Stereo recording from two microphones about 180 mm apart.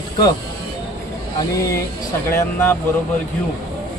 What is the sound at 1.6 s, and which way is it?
Speech, 15° left (ahead or behind).